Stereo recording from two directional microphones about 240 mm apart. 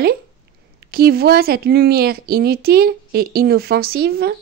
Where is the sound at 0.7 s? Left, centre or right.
Right.